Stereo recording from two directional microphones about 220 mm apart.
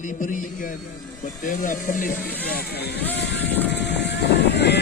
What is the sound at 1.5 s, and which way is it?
Speech, 35° left (ahead or behind).